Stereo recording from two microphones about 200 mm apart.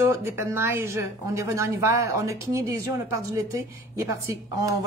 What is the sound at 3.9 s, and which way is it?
Speech, 15° right (ahead or behind).